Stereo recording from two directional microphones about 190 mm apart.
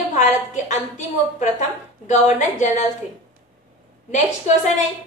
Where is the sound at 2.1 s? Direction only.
40° left (ahead or behind).